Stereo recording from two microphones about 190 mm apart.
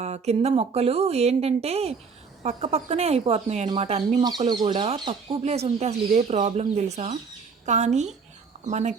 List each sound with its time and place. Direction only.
0.0 s speech: 35° right (ahead or behind)
4.2 s speech: 20° right (ahead or behind); by 9.0 s 40° right (ahead or behind)